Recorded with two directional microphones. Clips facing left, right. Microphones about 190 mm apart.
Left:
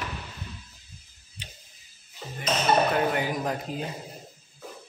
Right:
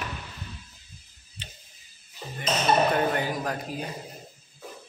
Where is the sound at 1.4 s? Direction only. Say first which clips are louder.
Even; 10° left (ahead or behind).